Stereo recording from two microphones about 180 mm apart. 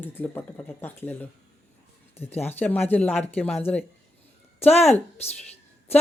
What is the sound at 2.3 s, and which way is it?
Speech, 10° left (ahead or behind).